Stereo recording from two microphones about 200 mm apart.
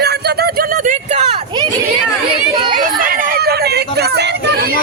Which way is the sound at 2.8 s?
45° right (ahead or behind).